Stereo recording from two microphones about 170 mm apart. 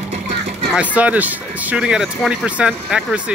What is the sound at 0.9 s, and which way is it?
Speech, 10° right (ahead or behind).